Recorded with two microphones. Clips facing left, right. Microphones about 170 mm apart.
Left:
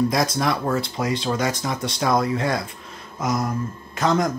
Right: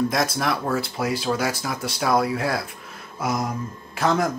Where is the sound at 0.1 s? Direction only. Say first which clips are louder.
Left 2 dB; centre (ahead or behind).